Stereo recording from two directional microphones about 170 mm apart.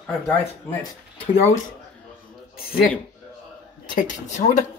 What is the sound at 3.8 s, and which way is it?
Speech, 50° left (ahead or behind).